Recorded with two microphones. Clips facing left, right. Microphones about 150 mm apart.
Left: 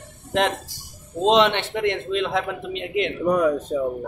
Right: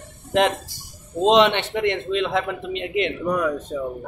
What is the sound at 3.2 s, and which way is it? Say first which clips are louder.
Speech: left 3 dB; 25° left (ahead or behind).